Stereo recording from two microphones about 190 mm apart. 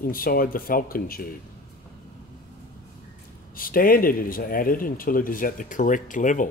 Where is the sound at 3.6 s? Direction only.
50° left (ahead or behind).